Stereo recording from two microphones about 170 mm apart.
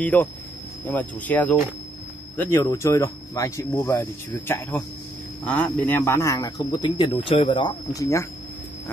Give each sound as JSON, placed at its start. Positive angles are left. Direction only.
{"t": 0.0, "sound": "speech", "side_deg": 10}